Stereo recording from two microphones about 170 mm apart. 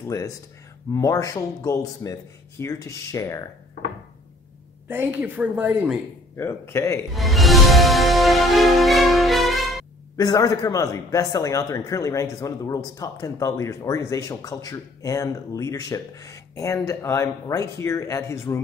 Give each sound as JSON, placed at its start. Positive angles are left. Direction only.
{"t": 0.9, "sound": "speech", "side_deg": 20}
{"t": 4.8, "sound": "a woman's voice", "side_deg": -10}
{"t": 6.3, "sound": "speech", "side_deg": 15}
{"t": 7.1, "sound": "music", "side_deg": 0}
{"t": 10.1, "sound": "speech", "side_deg": 20}